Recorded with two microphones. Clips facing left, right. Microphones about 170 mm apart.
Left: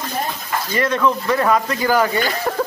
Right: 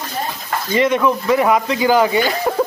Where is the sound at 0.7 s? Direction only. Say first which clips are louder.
Right 3 dB; 15° right (ahead or behind).